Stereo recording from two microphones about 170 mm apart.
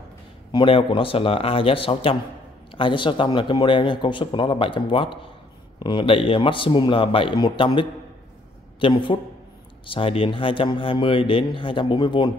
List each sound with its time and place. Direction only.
0.5 s speech: 30° left (ahead or behind)